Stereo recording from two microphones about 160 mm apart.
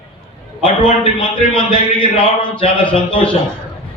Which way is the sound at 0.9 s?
35° left (ahead or behind).